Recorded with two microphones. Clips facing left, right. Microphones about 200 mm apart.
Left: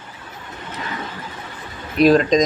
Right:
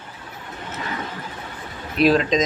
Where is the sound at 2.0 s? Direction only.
5° right (ahead or behind).